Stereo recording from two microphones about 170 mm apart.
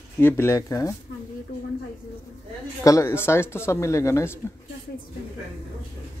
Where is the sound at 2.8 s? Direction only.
15° left (ahead or behind).